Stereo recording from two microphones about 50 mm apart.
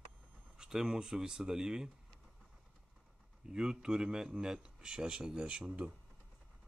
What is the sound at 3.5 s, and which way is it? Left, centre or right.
A man's voice, centre.